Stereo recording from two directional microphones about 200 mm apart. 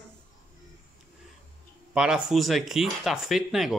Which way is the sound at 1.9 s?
5° right (ahead or behind).